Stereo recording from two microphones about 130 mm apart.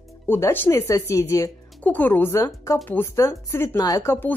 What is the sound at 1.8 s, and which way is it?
Speech, 15° left (ahead or behind).